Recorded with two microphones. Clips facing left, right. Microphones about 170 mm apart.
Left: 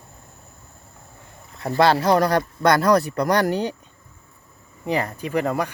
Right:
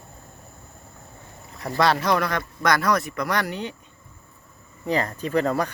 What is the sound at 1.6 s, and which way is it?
Speech, 30° left (ahead or behind).